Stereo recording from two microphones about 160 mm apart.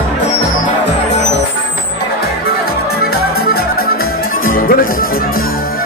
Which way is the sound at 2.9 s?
80° left.